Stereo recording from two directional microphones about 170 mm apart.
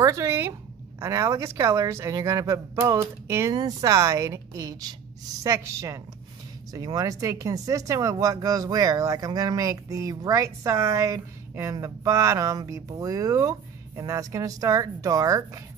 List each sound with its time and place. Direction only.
0.0 s speech: 15° right (ahead or behind)